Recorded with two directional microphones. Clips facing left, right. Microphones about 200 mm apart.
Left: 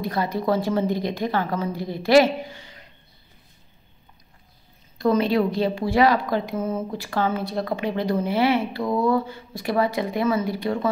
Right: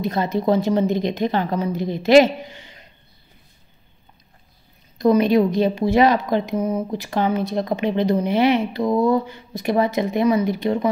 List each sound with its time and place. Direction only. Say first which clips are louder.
0.0 s a woman's voice: right 4 dB; 20° right (ahead or behind)
4.9 s a woman's voice: right 4 dB; 20° right (ahead or behind)